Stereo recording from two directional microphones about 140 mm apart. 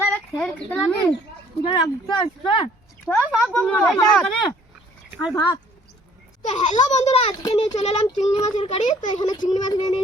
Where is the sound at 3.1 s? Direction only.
10° left (ahead or behind).